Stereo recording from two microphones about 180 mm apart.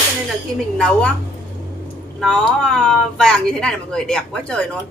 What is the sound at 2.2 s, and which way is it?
Speech, centre (ahead or behind).